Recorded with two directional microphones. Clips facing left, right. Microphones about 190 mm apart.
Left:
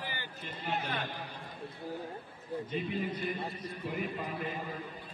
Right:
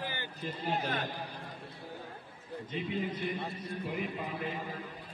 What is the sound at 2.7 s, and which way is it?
Speech, 20° right (ahead or behind).